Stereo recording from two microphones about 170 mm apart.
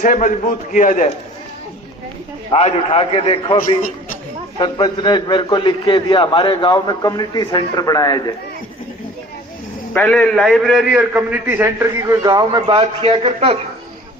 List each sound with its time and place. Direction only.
0.0 s a man's voice: 50° left (ahead or behind)
2.5 s a man's voice: 40° left (ahead or behind); by 8.2 s 20° left (ahead or behind)
9.9 s a man's voice: 5° left (ahead or behind); by 13.6 s 35° right (ahead or behind)